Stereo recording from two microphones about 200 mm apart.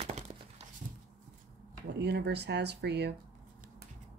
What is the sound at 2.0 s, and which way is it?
Speech, 55° right (ahead or behind).